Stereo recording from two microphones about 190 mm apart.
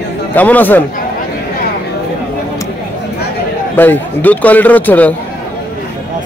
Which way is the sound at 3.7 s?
10° left (ahead or behind).